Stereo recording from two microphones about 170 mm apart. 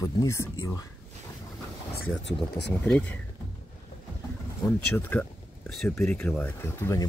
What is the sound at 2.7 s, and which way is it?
Speech, 5° left (ahead or behind).